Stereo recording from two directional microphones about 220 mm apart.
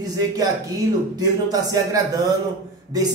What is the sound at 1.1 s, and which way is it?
A man's voice, 15° right (ahead or behind).